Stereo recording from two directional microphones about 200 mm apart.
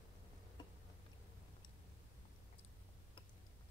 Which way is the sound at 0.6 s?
20° left (ahead or behind).